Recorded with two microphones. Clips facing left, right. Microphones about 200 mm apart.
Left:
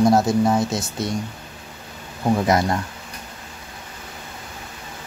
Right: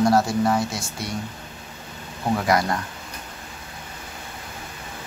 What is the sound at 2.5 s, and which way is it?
Speech, 25° left (ahead or behind).